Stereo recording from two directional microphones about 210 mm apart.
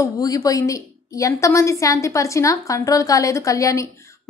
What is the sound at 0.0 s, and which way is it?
A woman's voice, 15° left (ahead or behind).